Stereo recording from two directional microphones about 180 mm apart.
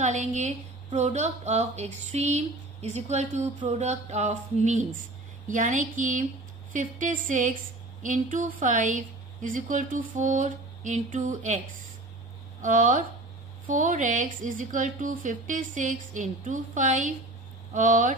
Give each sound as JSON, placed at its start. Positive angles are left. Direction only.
{"t": 0.0, "sound": "a woman's voice", "side_deg": -40}
{"t": 12.6, "sound": "a woman's voice", "side_deg": -45}